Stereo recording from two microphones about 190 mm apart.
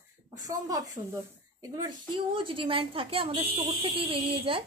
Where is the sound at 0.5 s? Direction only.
20° right (ahead or behind).